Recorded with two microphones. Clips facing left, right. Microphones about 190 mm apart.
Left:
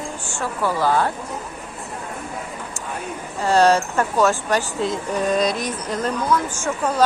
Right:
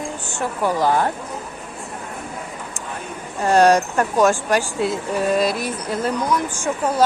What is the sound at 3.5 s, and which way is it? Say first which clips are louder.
Speech: right 2 dB; 15° right (ahead or behind).